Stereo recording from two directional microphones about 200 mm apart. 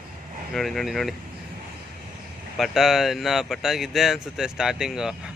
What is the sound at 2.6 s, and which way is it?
Speech, centre (ahead or behind).